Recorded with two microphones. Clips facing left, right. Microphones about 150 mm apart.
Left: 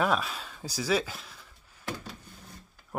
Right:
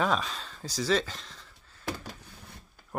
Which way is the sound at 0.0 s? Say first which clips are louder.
Left 1 dB; 5° left (ahead or behind).